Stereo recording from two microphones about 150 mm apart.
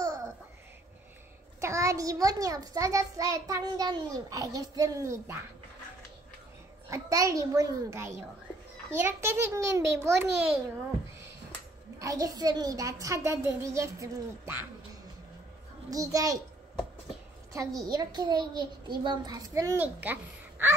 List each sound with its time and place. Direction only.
0.0 s babbling: 25° right (ahead or behind)
1.6 s a child's voice: 20° right (ahead or behind)
6.9 s a child's voice: 20° right (ahead or behind)
12.0 s a child's voice: 20° right (ahead or behind)
15.9 s a child's voice: 25° right (ahead or behind)
17.5 s a child's voice: 25° right (ahead or behind)